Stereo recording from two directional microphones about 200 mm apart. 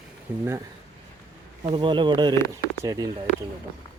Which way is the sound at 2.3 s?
15° left (ahead or behind).